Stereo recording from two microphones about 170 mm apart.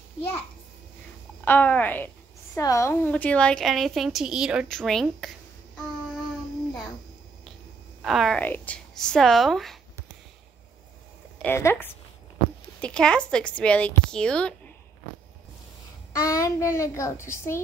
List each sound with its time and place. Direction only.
1.4 s a child's voice: 10° left (ahead or behind)
8.0 s a woman's voice: centre (ahead or behind)
11.4 s a child's voice: 15° left (ahead or behind)
16.2 s a child's voice: 20° left (ahead or behind)